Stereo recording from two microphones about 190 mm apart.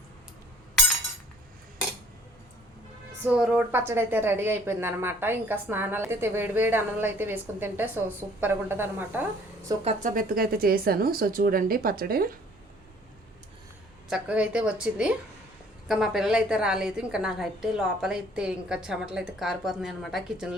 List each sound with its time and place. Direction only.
3.2 s a woman's voice: 5° right (ahead or behind)
9.8 s speech: 40° right (ahead or behind)
14.1 s a woman's voice: 5° right (ahead or behind)